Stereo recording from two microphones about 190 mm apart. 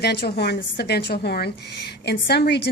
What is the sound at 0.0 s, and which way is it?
A woman's voice, 60° left (ahead or behind).